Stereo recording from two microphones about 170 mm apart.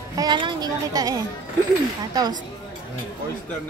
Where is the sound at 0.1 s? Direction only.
25° right (ahead or behind).